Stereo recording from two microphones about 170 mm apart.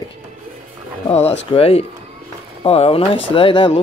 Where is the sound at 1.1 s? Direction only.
40° left (ahead or behind).